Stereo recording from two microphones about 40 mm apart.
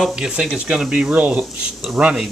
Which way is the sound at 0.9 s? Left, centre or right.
Right.